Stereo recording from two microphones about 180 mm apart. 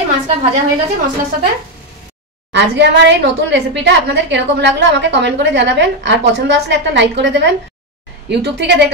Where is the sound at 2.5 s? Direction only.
75° right (ahead or behind).